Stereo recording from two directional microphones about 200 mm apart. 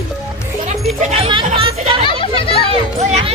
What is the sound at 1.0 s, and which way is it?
Speech, 30° right (ahead or behind).